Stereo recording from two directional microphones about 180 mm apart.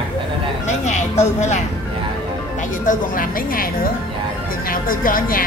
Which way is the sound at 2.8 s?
50° left (ahead or behind).